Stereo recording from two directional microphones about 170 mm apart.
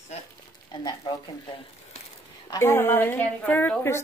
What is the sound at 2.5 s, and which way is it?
Speech, 15° left (ahead or behind).